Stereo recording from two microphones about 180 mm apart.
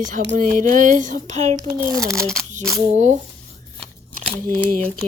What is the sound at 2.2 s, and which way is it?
Speech, 5° left (ahead or behind).